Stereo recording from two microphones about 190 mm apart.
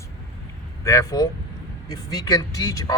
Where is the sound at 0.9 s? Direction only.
15° left (ahead or behind).